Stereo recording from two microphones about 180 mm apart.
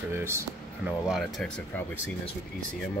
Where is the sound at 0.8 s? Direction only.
Centre (ahead or behind).